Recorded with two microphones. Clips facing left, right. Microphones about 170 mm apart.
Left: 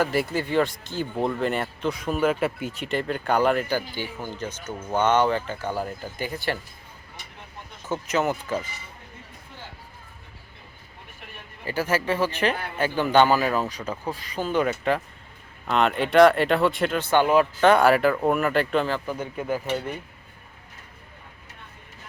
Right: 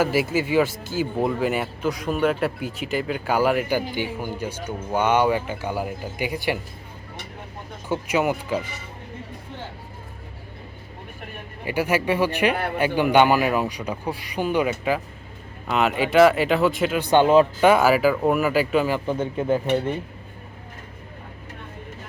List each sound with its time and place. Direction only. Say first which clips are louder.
0.0 s speech: right 3 dB; 5° right (ahead or behind)
7.9 s speech: right 2 dB; 10° right (ahead or behind)
11.6 s speech: right 3 dB; 15° right (ahead or behind)
17.0 s speech: right 4 dB; 20° right (ahead or behind)
17.6 s speech: right 1 dB; 5° right (ahead or behind)
19.0 s speech: right 6 dB; 25° right (ahead or behind)